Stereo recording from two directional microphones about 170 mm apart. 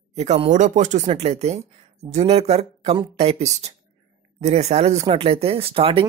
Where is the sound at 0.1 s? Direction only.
40° right (ahead or behind).